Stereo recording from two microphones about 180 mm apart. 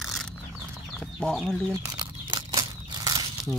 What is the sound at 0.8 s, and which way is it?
Speech, 5° left (ahead or behind).